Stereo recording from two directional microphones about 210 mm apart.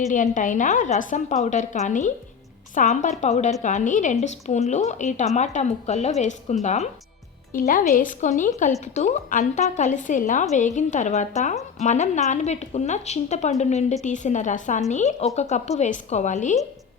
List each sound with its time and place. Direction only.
0.1 s a woman's voice: 40° left (ahead or behind)